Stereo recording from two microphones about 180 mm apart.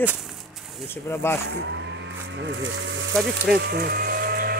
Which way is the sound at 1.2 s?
15° left (ahead or behind).